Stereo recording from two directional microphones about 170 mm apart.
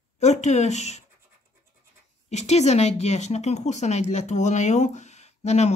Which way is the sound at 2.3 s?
40° left (ahead or behind).